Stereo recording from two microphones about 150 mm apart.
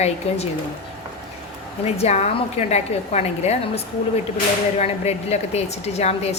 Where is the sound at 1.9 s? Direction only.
45° left (ahead or behind).